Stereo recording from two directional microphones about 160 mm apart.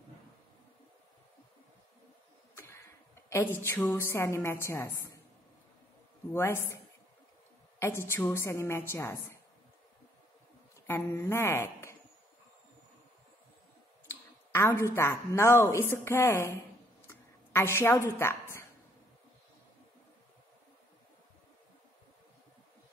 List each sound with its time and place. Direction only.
2.5 s a sound: 15° left (ahead or behind)
3.9 s a woman's voice: 15° left (ahead or behind)
6.3 s a woman's voice: 15° left (ahead or behind)
7.8 s a woman's voice: 15° left (ahead or behind)
10.9 s speech: 15° left (ahead or behind)
14.0 s a woman's voice: 15° left (ahead or behind)
17.1 s a sound: 15° left (ahead or behind)